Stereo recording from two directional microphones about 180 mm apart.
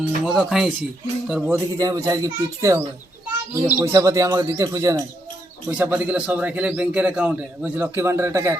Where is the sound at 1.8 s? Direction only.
20° right (ahead or behind).